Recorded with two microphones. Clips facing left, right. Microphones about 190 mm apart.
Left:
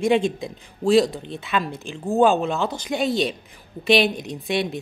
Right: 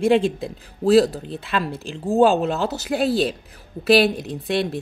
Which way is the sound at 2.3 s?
40° right (ahead or behind).